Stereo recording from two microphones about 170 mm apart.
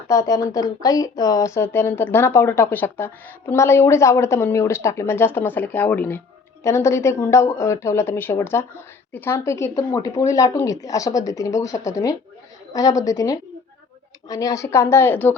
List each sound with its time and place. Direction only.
0.1 s a woman's voice: 20° left (ahead or behind)